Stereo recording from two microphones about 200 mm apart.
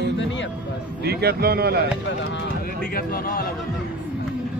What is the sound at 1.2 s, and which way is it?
Speech, 50° right (ahead or behind).